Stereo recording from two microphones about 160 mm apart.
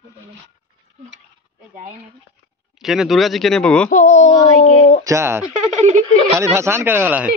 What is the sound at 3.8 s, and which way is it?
Speech, 50° left (ahead or behind).